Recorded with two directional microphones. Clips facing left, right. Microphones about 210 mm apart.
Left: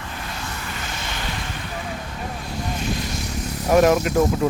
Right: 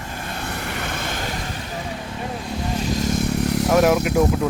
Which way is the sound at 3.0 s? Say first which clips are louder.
Right 7 dB; 50° right (ahead or behind).